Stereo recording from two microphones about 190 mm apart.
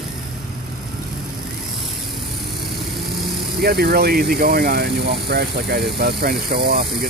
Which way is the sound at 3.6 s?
55° right (ahead or behind).